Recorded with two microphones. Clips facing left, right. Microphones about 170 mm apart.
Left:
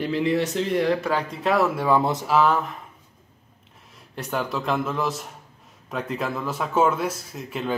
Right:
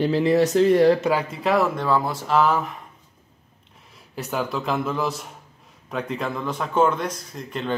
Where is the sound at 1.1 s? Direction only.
Centre (ahead or behind).